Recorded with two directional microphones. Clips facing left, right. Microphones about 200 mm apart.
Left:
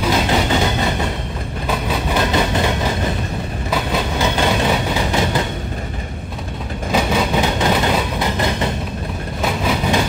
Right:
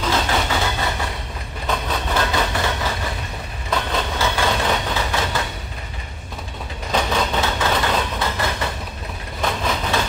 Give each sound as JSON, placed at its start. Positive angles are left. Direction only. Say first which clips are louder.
{"t": 0.0, "sound": "vehicle", "louder": "left 4 dB", "side_deg": 15}
{"t": 1.7, "sound": "train", "louder": "left 3 dB", "side_deg": 10}
{"t": 6.9, "sound": "vehicle", "louder": "left 3 dB", "side_deg": 10}
{"t": 9.4, "sound": "train", "louder": "left 3 dB", "side_deg": 10}